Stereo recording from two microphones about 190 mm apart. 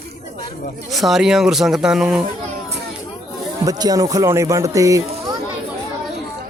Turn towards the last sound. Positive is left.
turn(degrees=-15)  # may be behind; listen again after turning